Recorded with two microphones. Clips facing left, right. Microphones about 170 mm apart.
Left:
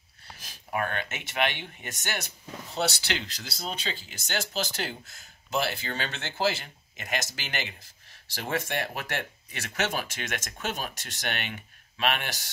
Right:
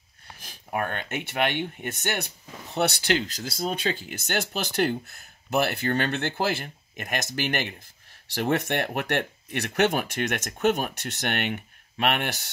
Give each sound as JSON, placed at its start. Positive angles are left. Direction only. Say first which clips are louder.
{"t": 1.0, "sound": "speech", "louder": "right 3 dB", "side_deg": -55}